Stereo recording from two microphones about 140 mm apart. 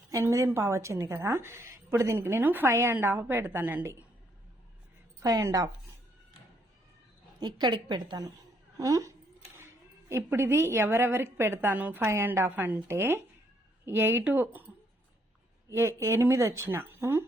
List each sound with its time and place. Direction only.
0.1 s a woman's voice: 20° right (ahead or behind)
5.2 s a woman's voice: 25° right (ahead or behind)
7.3 s a woman's voice: 30° right (ahead or behind); by 14.6 s 15° right (ahead or behind)
15.7 s a woman's voice: 20° right (ahead or behind)